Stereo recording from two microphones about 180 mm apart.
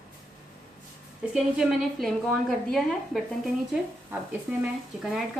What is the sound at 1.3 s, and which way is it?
A woman's voice, centre (ahead or behind).